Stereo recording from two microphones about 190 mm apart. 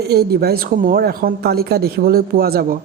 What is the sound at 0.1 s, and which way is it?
Speech, 55° right (ahead or behind).